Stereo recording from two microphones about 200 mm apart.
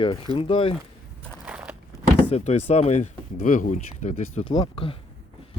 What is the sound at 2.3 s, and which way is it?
Speech, 35° left (ahead or behind).